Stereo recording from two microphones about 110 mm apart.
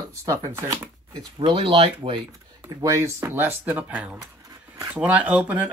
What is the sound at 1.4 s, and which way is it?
Speech, 50° right (ahead or behind).